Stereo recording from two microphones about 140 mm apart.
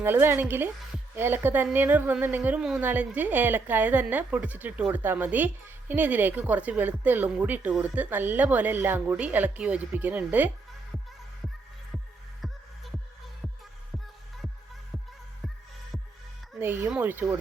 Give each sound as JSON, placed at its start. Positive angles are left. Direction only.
{"t": 0.0, "sound": "speech", "side_deg": -15}
{"t": 16.6, "sound": "speech", "side_deg": -15}